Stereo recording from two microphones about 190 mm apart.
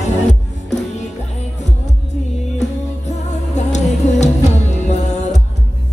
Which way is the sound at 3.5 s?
35° left (ahead or behind).